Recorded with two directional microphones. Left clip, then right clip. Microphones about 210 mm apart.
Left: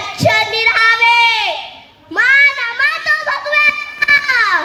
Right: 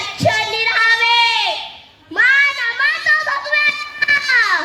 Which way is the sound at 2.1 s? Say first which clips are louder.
Left 3 dB; 40° left (ahead or behind).